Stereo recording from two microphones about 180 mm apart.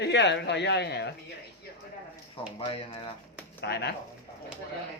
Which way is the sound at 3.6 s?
65° left (ahead or behind).